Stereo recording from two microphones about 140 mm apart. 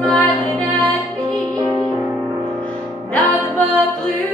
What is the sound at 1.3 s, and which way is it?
Music, 30° right (ahead or behind).